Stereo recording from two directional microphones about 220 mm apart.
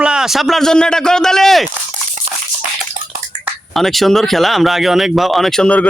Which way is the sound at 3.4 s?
Centre (ahead or behind).